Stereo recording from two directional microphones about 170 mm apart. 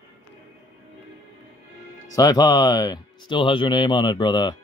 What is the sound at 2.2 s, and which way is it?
Speech, 20° left (ahead or behind).